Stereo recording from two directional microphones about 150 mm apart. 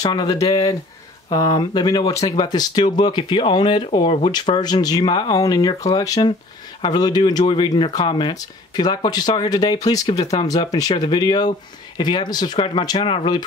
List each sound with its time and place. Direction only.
0.0 s speech: 30° left (ahead or behind)